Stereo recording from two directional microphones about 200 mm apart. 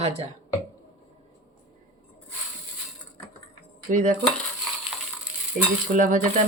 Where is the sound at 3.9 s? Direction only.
40° right (ahead or behind).